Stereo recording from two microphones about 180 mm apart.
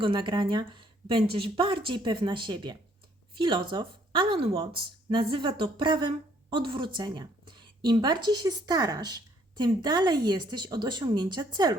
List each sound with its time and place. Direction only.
0.0 s speech: 25° right (ahead or behind)